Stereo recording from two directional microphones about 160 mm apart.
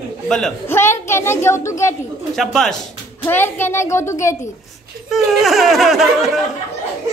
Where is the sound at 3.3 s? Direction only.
15° left (ahead or behind).